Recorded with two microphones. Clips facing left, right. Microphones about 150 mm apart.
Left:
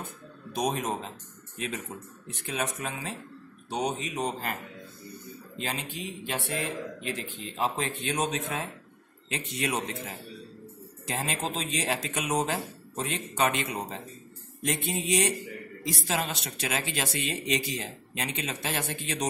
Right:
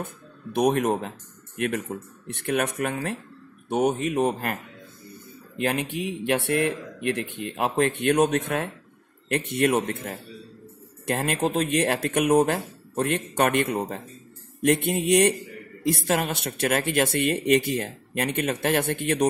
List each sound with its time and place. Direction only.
0.0 s a woman's voice: 60° right (ahead or behind)
5.6 s a woman's voice: 60° right (ahead or behind)